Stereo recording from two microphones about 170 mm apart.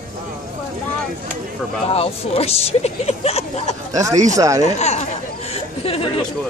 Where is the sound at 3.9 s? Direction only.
20° right (ahead or behind).